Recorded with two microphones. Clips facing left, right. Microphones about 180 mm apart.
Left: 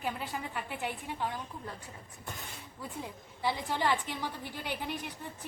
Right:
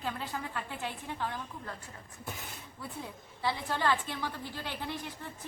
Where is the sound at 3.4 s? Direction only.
15° left (ahead or behind).